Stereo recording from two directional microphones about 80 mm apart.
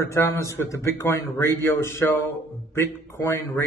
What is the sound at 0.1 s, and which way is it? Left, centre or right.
A man's voice, left.